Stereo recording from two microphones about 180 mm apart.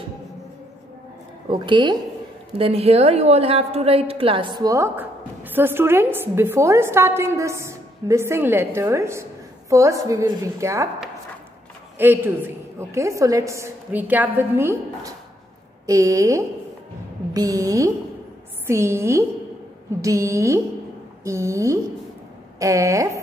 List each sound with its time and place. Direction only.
1.5 s a woman's voice: 25° right (ahead or behind)
12.0 s a woman's voice: 10° right (ahead or behind)